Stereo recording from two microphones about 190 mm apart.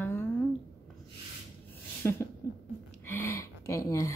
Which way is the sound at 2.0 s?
15° left (ahead or behind).